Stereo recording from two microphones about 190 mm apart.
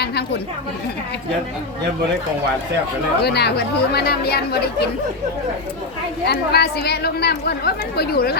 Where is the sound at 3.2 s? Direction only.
60° left (ahead or behind).